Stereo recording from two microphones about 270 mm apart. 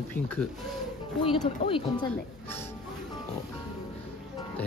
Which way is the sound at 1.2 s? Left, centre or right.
Left.